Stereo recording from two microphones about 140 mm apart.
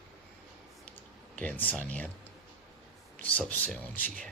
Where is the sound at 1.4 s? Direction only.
10° left (ahead or behind).